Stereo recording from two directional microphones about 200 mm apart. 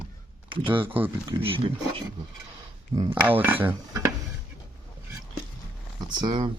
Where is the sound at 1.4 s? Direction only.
25° right (ahead or behind).